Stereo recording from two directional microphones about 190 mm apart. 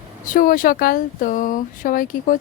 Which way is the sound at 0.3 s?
45° left (ahead or behind).